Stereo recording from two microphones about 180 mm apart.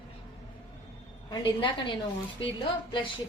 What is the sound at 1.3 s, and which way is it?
Speech, 25° left (ahead or behind).